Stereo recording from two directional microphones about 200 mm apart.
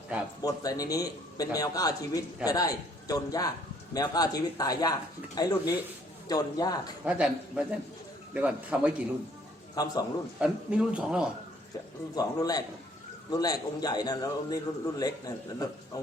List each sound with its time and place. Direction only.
0.1 s a man's voice: 5° right (ahead or behind)
0.4 s a man's voice: 15° left (ahead or behind)
7.0 s a man's voice: 5° right (ahead or behind)
9.7 s speech: 20° left (ahead or behind)
10.4 s speech: 5° right (ahead or behind)
12.1 s speech: 20° left (ahead or behind)